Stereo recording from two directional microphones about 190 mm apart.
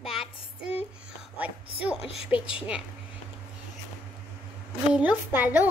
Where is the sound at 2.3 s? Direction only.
5° right (ahead or behind).